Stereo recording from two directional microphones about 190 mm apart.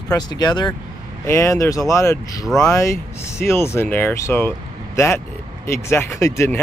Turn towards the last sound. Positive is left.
turn(degrees=15)  # may be behind; listen again after turning